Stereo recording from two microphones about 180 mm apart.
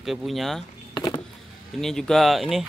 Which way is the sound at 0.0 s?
Centre (ahead or behind).